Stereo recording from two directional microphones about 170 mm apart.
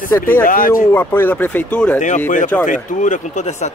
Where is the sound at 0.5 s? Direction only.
55° left (ahead or behind).